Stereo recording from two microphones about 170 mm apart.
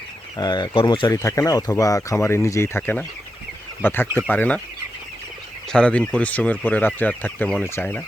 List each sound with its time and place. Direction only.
0.3 s speech: 25° left (ahead or behind); by 4.6 s 10° left (ahead or behind)
5.7 s speech: 5° left (ahead or behind)